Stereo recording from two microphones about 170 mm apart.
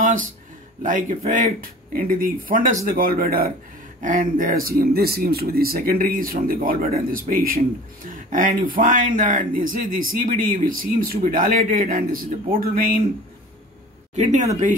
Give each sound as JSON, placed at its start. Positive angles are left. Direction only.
{"t": 0.0, "sound": "music", "side_deg": -50}
{"t": 0.8, "sound": "speech", "side_deg": -45}
{"t": 14.1, "sound": "speech", "side_deg": -45}